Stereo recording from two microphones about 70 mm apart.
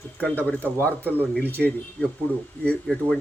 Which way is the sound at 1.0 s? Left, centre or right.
Right.